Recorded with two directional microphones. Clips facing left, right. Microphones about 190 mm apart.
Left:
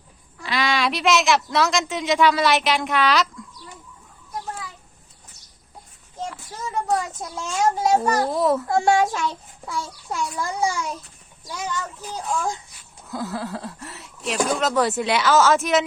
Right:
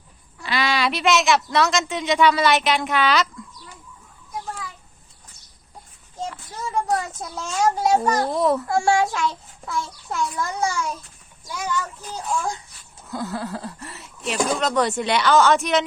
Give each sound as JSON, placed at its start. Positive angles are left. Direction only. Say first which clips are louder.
{"t": 0.4, "sound": "speech", "louder": "even", "side_deg": 0}
{"t": 6.2, "sound": "a child's voice", "louder": "right 1 dB", "side_deg": 0}
{"t": 8.6, "sound": "a child's voice", "louder": "left 1 dB", "side_deg": 20}
{"t": 13.1, "sound": "speech", "louder": "even", "side_deg": 0}